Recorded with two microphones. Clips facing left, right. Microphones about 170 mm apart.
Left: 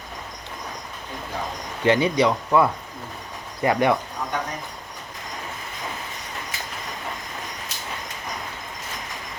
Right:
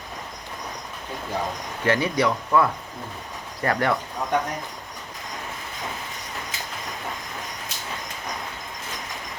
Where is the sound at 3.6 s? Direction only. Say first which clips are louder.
Left 3 dB; 15° left (ahead or behind).